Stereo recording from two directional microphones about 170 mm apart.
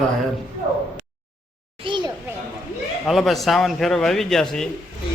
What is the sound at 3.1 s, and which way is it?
Speech, centre (ahead or behind).